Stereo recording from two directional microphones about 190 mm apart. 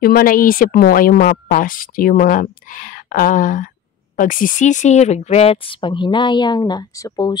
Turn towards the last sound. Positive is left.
turn(degrees=20)  # may be behind; listen again after turning